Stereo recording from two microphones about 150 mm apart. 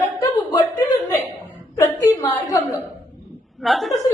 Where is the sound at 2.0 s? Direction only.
20° left (ahead or behind).